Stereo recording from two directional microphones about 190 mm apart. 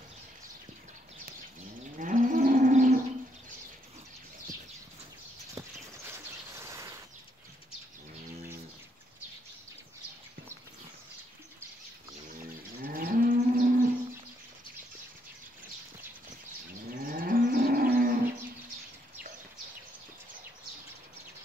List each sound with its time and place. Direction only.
2.0 s moo: 45° right (ahead or behind)
6.0 s a sound: 15° right (ahead or behind)
12.8 s moo: 50° right (ahead or behind)
17.0 s moo: 50° right (ahead or behind)